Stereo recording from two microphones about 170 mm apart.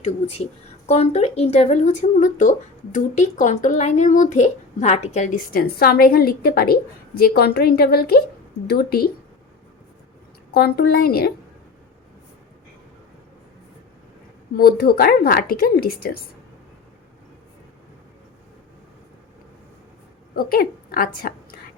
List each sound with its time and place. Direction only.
0.0 s a woman's voice: 40° left (ahead or behind); by 9.0 s 65° left (ahead or behind)
10.5 s a woman's voice: 65° left (ahead or behind)
14.5 s a woman's voice: 65° left (ahead or behind)
20.3 s a woman's voice: 60° left (ahead or behind)